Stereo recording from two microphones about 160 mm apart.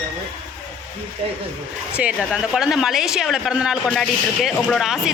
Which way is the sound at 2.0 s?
5° right (ahead or behind).